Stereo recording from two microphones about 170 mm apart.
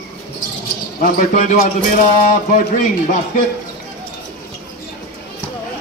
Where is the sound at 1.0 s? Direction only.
55° left (ahead or behind).